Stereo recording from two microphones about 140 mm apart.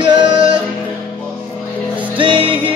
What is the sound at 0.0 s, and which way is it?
Music, 35° right (ahead or behind).